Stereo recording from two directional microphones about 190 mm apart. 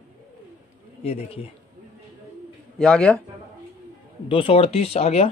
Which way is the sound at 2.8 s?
5° left (ahead or behind).